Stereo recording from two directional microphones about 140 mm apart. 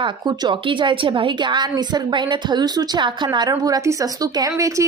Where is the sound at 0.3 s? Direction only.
35° right (ahead or behind).